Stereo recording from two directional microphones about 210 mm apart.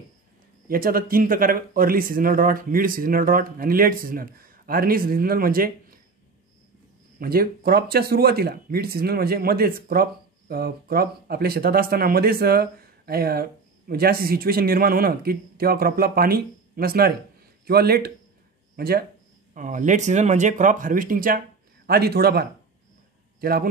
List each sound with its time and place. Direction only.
0.7 s speech: 45° right (ahead or behind)
7.2 s speech: 45° right (ahead or behind)